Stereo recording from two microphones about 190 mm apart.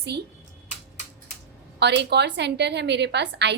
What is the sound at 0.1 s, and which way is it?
Speech, 65° right (ahead or behind).